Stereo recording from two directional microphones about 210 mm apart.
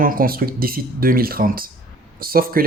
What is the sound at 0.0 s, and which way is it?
Speech, 40° right (ahead or behind).